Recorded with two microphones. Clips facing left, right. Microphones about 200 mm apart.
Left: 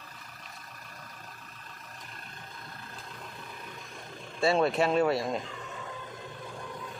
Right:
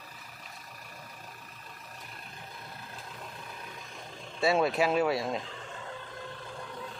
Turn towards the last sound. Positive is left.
turn(degrees=0)  # may be behind; listen again after turning